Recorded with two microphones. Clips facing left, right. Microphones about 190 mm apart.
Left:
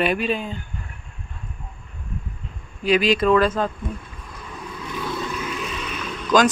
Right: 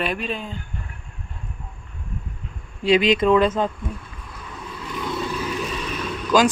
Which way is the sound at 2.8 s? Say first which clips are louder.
Right 1 dB; 20° right (ahead or behind).